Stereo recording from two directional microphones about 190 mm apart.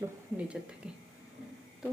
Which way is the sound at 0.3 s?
5° right (ahead or behind).